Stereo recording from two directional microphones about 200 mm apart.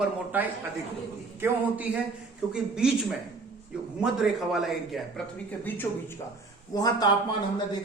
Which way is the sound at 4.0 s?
Centre (ahead or behind).